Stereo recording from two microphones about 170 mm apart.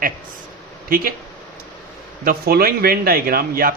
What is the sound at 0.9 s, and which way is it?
Speech, 60° right (ahead or behind).